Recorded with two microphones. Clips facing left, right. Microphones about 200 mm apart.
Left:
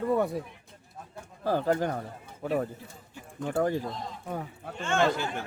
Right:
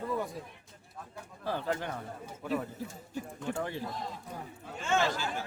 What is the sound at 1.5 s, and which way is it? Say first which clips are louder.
Speech: left 7 dB; 40° left (ahead or behind).